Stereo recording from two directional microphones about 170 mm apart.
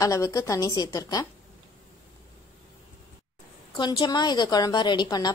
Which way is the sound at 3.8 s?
25° left (ahead or behind).